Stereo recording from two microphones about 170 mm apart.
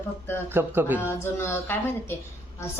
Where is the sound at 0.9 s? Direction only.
15° left (ahead or behind).